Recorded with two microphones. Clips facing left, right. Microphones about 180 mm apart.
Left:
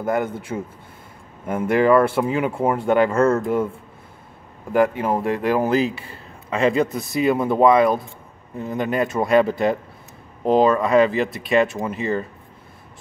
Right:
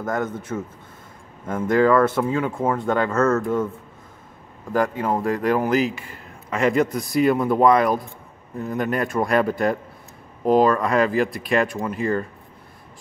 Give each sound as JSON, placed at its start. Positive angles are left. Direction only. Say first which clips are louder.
{"t": 0.5, "sound": "speech", "louder": "left 1 dB", "side_deg": 15}
{"t": 3.3, "sound": "speech", "louder": "left 1 dB", "side_deg": 30}
{"t": 4.7, "sound": "speech", "louder": "left 3 dB", "side_deg": 25}
{"t": 5.9, "sound": "a sound", "louder": "left 1 dB", "side_deg": 30}
{"t": 7.0, "sound": "speech", "louder": "right 1 dB", "side_deg": 25}